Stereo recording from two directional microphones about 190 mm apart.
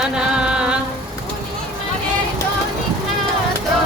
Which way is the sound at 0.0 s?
5° right (ahead or behind).